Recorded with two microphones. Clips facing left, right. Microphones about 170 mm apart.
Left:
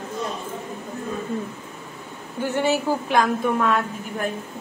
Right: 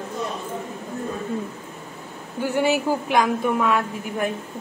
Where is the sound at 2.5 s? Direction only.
15° right (ahead or behind).